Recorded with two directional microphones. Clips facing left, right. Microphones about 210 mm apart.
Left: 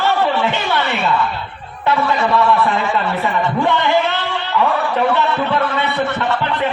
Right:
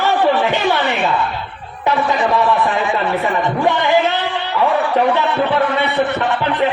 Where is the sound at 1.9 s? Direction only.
15° right (ahead or behind).